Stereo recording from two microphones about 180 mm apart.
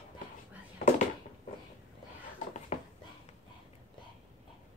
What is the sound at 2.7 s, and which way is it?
Dog, 40° left (ahead or behind).